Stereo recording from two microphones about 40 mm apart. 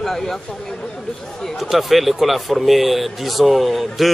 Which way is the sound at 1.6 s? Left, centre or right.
Centre.